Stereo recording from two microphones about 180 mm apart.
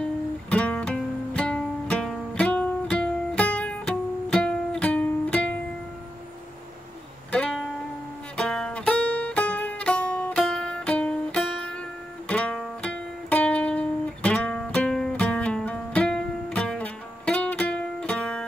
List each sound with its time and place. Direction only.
0.0 s music: 5° left (ahead or behind)
7.2 s music: 5° left (ahead or behind)